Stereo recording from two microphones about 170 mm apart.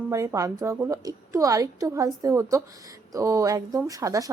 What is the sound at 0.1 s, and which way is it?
Speech, 15° right (ahead or behind).